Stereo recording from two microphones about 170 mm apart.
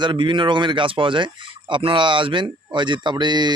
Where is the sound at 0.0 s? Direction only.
30° right (ahead or behind).